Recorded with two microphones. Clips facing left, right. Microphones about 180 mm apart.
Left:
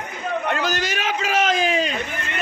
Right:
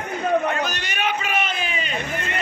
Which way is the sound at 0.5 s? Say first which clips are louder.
Left 3 dB; 90° left.